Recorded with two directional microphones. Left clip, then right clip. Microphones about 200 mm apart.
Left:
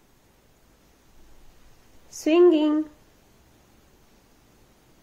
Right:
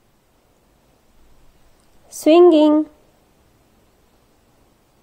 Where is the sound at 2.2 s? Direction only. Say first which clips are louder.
Right 7 dB; 35° right (ahead or behind).